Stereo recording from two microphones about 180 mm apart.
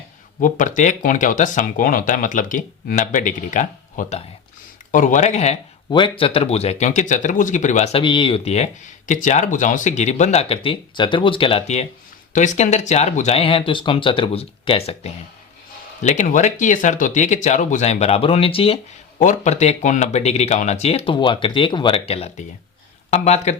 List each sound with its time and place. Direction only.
0.3 s speech: 45° left (ahead or behind)
5.9 s speech: 30° left (ahead or behind)
19.2 s speech: 40° left (ahead or behind)